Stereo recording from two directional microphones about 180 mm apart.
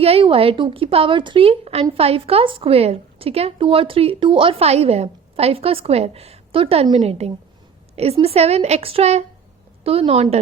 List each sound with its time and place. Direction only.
0.0 s speech: 30° right (ahead or behind)